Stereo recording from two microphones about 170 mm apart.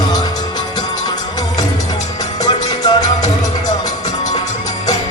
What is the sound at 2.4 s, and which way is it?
Music, 20° left (ahead or behind).